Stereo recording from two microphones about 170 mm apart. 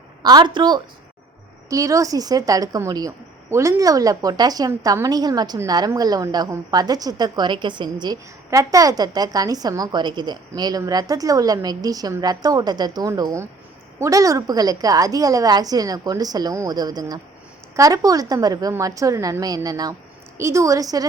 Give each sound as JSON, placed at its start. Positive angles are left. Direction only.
{"t": 0.2, "sound": "a woman's voice", "side_deg": -25}